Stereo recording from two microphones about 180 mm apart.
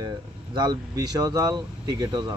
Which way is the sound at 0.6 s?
20° right (ahead or behind).